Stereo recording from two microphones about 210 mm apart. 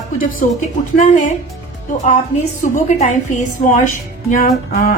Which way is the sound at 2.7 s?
35° left (ahead or behind).